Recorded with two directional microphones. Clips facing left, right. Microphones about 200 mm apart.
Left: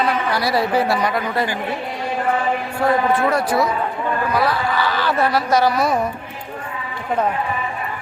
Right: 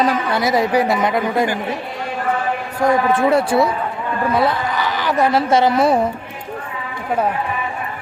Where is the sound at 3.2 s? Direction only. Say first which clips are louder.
Right 3 dB; 25° right (ahead or behind).